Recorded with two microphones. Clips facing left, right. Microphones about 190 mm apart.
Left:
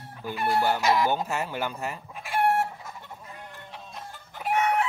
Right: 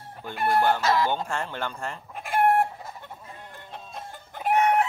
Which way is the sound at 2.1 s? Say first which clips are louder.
Right 3 dB; 50° right (ahead or behind).